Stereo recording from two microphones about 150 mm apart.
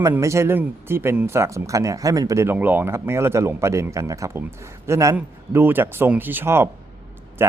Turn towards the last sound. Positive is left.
turn(degrees=-15)  # may be behind; listen again after turning